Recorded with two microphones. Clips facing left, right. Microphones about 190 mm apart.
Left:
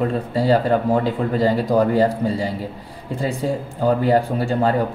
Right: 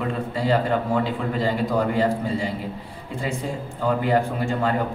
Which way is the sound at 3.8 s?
35° left (ahead or behind).